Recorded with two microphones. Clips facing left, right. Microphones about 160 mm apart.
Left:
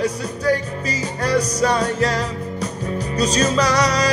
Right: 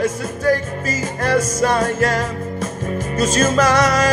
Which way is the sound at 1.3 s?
35° left (ahead or behind).